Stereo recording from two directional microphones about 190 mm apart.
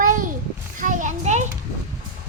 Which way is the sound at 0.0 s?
45° right (ahead or behind).